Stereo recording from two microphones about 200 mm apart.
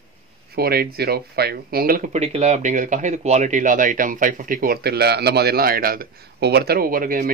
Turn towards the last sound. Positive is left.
turn(degrees=-45)  # may be behind; listen again after turning